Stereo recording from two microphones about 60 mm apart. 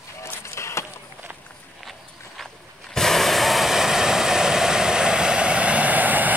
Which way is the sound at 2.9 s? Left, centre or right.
Centre.